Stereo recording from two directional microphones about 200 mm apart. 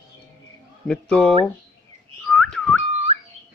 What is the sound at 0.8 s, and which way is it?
Speech, 5° left (ahead or behind).